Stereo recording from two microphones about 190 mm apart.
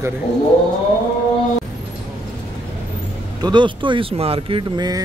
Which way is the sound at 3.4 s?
25° right (ahead or behind).